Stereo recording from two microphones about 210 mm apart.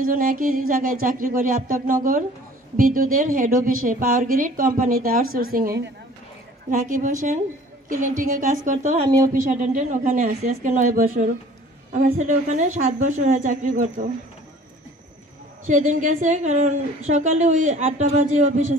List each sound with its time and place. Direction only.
0.0 s a woman's voice: 40° right (ahead or behind)
6.7 s a woman's voice: 40° right (ahead or behind)
15.6 s a woman's voice: 35° right (ahead or behind)